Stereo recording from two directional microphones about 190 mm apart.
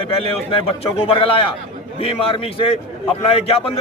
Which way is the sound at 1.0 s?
30° left (ahead or behind).